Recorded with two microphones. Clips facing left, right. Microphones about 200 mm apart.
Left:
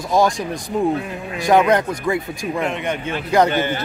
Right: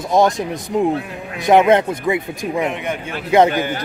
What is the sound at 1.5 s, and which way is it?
A man's voice, 25° right (ahead or behind).